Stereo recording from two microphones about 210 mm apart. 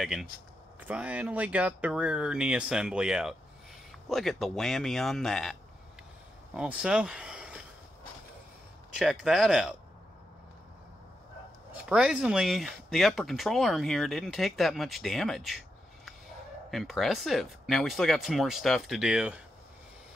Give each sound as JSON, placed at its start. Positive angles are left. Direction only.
{"t": 0.0, "sound": "speech", "side_deg": 0}
{"t": 8.9, "sound": "speech", "side_deg": 0}
{"t": 11.7, "sound": "speech", "side_deg": -5}
{"t": 16.7, "sound": "speech", "side_deg": 0}